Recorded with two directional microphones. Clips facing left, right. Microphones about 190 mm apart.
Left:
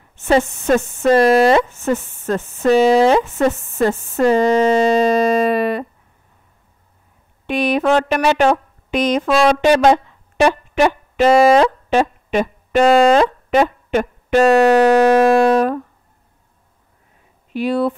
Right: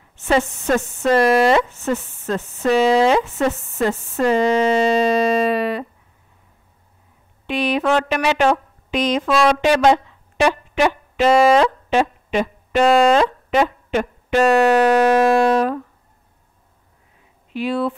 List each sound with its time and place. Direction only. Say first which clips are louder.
0.3 s speech: left 3 dB; 30° left (ahead or behind); by 5.9 s 50° left (ahead or behind)
7.4 s a woman's voice: left 3 dB; 50° left (ahead or behind)
9.8 s a sound: left 2 dB; 45° left (ahead or behind)
17.5 s speech: left 3 dB; 40° left (ahead or behind)